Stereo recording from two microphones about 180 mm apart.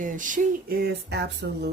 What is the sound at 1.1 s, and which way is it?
Speech, 65° right (ahead or behind).